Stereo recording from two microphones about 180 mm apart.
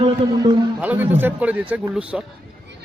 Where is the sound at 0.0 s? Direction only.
25° right (ahead or behind).